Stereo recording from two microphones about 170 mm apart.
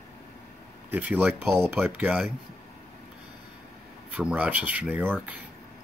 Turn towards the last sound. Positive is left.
turn(degrees=-10)  # may be behind; listen again after turning